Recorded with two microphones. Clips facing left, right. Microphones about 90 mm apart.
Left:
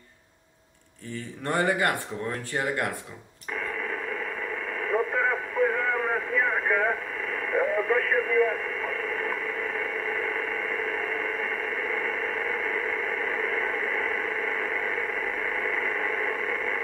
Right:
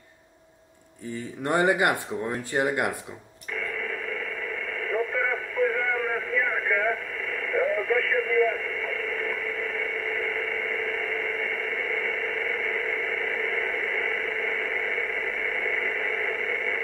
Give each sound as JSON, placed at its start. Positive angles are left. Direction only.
{"t": 1.4, "sound": "speech", "side_deg": -20}
{"t": 4.8, "sound": "radio", "side_deg": 35}